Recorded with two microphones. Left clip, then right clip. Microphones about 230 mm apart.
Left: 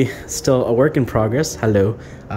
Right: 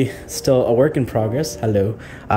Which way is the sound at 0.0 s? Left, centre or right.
Centre.